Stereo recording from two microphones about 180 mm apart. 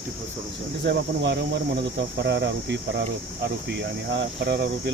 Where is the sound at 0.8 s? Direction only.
70° right (ahead or behind).